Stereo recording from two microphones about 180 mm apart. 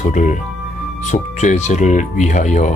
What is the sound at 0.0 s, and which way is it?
Speech, 45° left (ahead or behind).